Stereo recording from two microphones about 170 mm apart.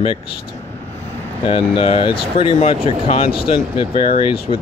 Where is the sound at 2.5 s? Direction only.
40° left (ahead or behind).